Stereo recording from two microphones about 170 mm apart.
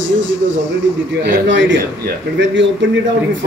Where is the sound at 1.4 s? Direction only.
90° right.